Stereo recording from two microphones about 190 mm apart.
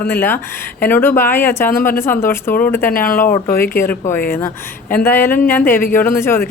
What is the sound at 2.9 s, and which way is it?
Speech, 50° left (ahead or behind).